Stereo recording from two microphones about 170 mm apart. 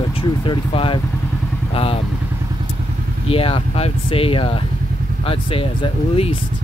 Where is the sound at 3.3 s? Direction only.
35° left (ahead or behind).